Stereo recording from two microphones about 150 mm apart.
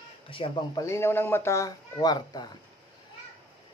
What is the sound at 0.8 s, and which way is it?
Speech, 15° left (ahead or behind).